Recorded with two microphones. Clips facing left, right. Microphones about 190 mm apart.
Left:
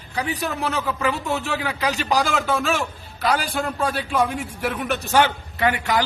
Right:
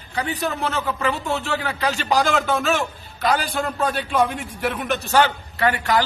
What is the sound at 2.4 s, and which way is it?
A man's voice, centre (ahead or behind).